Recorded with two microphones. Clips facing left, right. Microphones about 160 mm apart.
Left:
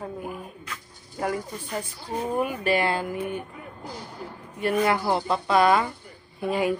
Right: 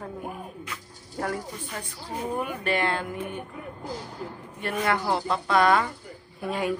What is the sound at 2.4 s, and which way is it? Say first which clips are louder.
A woman's voice: left 4 dB; 5° left (ahead or behind).